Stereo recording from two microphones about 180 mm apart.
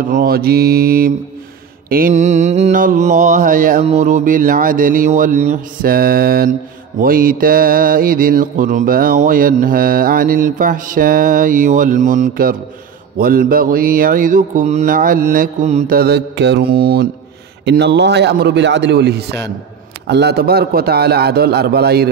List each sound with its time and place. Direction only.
0.0 s a man's voice: 55° right (ahead or behind)
1.9 s mantra: 55° right (ahead or behind)
16.0 s a man's voice: 70° right (ahead or behind)